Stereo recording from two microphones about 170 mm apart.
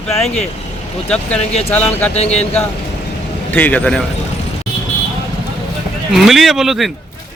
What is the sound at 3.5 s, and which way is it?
Speech, 10° left (ahead or behind).